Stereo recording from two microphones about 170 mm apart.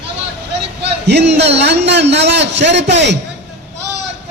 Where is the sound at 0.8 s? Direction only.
80° right.